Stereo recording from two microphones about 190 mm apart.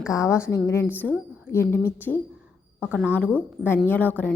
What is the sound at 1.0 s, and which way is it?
A woman's voice, 5° left (ahead or behind).